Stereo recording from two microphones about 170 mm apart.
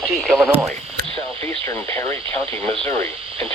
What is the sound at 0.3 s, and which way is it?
Speech, 5° right (ahead or behind).